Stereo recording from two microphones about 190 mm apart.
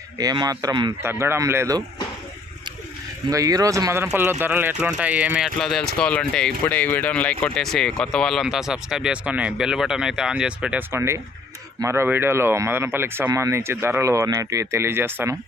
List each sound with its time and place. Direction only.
0.2 s a man's voice: 20° right (ahead or behind)
3.2 s speech: 20° right (ahead or behind)
5.5 s speech: 5° left (ahead or behind)